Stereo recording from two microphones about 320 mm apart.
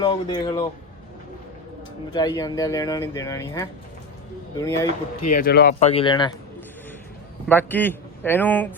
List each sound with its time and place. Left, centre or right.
0.0 s speech: centre
2.1 s speech: centre
5.2 s speech: left
5.8 s speech: centre
7.4 s speech: centre